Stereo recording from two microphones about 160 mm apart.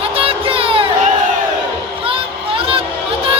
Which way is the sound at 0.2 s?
35° right (ahead or behind).